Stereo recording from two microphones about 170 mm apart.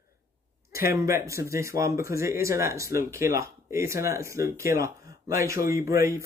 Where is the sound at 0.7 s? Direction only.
15° right (ahead or behind).